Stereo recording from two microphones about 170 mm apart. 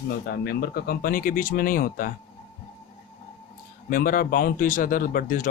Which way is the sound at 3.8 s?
55° left (ahead or behind).